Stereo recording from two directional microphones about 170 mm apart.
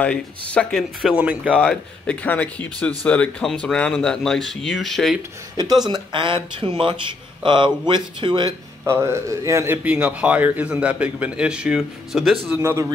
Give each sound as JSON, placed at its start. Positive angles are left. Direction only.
{"t": 0.0, "sound": "speech", "side_deg": 5}
{"t": 1.6, "sound": "speech", "side_deg": 5}
{"t": 5.6, "sound": "speech", "side_deg": -25}
{"t": 8.8, "sound": "speech", "side_deg": -15}